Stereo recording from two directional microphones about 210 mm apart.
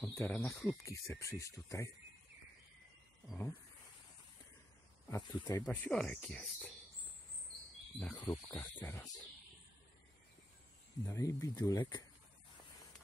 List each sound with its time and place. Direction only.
0.0 s speech: 5° left (ahead or behind)
5.1 s speech: 20° left (ahead or behind)
5.7 s speech: 5° left (ahead or behind)
8.0 s speech: 20° left (ahead or behind)
11.1 s speech: 15° left (ahead or behind)